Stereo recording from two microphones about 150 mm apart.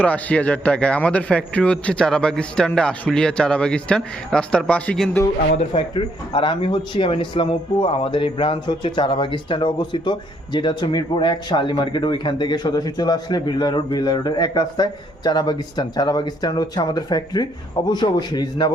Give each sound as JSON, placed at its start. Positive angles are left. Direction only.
{"t": 0.0, "sound": "a man's voice", "side_deg": 10}
{"t": 5.5, "sound": "a man's voice", "side_deg": 35}